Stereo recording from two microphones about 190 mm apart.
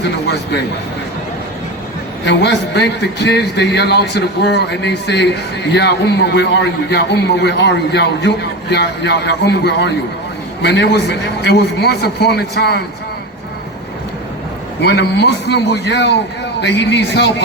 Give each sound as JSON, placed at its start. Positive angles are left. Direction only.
{"t": 2.2, "sound": "a man's voice", "side_deg": 65}
{"t": 14.8, "sound": "a man's voice", "side_deg": 60}